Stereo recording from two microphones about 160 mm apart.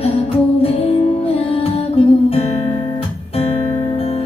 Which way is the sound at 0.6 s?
35° left (ahead or behind).